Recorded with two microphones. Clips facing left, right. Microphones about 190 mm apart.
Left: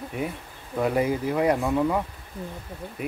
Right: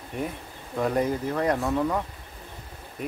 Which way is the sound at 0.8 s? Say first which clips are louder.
Left 1 dB; 5° left (ahead or behind).